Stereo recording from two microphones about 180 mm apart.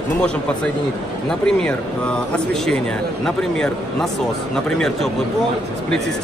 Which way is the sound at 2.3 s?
5° left (ahead or behind).